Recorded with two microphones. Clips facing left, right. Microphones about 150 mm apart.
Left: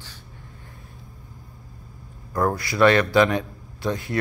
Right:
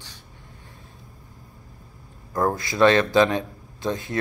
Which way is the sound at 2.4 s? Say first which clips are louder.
Even; 20° right (ahead or behind).